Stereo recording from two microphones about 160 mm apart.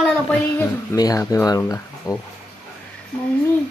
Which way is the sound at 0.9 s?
20° left (ahead or behind).